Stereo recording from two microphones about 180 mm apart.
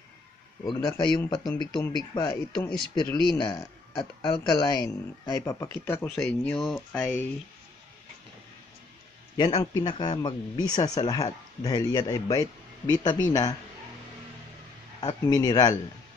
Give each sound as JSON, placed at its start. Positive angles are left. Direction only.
{"t": 0.7, "sound": "speech", "side_deg": 20}
{"t": 9.4, "sound": "speech", "side_deg": 25}
{"t": 15.0, "sound": "speech", "side_deg": 20}